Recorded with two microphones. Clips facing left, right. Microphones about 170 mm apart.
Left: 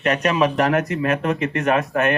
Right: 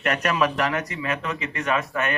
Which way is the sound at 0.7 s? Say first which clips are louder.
Left 8 dB; 55° left (ahead or behind).